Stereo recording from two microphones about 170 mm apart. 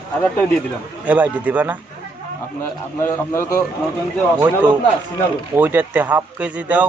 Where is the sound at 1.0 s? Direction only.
10° right (ahead or behind).